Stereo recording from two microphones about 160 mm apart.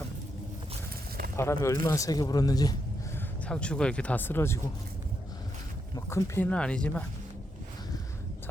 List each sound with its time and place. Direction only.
1.4 s speech: 15° left (ahead or behind)
3.4 s speech: 5° left (ahead or behind)
6.1 s speech: 20° left (ahead or behind)